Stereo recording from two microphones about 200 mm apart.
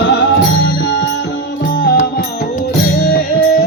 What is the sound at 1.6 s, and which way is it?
Music, 50° left (ahead or behind).